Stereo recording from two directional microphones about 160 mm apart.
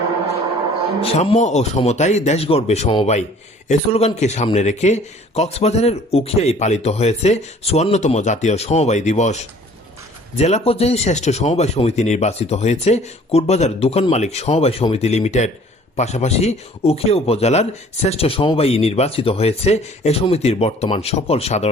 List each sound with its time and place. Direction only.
1.0 s speech: 40° left (ahead or behind)